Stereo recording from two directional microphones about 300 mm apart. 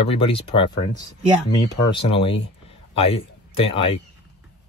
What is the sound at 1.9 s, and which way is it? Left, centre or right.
Speech, centre.